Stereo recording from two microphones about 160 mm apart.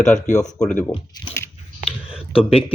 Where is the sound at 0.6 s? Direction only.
10° left (ahead or behind).